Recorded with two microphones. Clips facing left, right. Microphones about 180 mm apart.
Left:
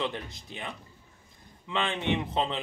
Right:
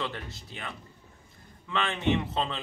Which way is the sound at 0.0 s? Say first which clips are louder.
Left 2 dB; 20° left (ahead or behind).